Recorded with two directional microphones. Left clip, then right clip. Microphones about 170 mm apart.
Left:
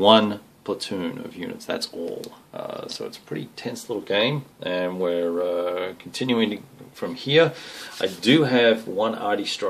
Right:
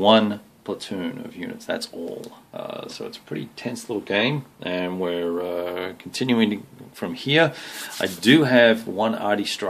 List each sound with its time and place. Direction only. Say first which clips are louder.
0.0 s speech: left 1 dB; centre (ahead or behind)
3.3 s speech: right 1 dB; 30° right (ahead or behind); by 9.7 s 50° right (ahead or behind)